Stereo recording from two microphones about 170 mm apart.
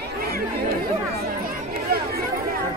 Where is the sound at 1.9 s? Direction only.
60° right (ahead or behind).